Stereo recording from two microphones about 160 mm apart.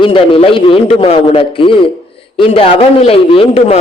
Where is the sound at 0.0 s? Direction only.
35° left (ahead or behind).